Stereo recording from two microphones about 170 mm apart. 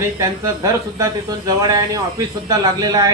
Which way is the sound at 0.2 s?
20° right (ahead or behind).